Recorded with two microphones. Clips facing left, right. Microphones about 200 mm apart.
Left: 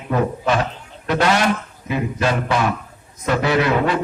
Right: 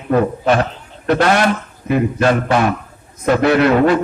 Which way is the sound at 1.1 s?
55° right (ahead or behind).